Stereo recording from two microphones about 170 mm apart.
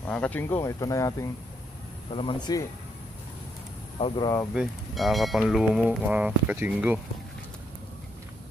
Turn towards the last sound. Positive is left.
turn(degrees=-10)  # may be behind; listen again after turning